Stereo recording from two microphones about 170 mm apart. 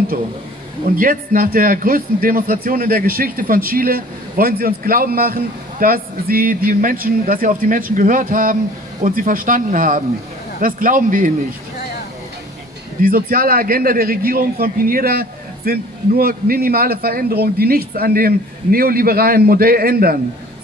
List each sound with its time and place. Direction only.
0.9 s a man's voice: 55° right (ahead or behind)
13.0 s a man's voice: 60° right (ahead or behind)